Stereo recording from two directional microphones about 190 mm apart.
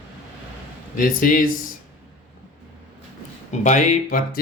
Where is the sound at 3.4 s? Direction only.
40° left (ahead or behind).